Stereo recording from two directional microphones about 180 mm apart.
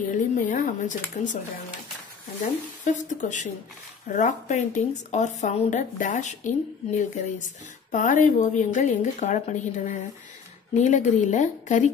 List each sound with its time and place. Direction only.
0.1 s a woman's voice: 45° left (ahead or behind)
2.8 s a woman's voice: 45° left (ahead or behind)